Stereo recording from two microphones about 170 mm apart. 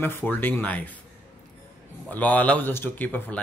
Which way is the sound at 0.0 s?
10° left (ahead or behind).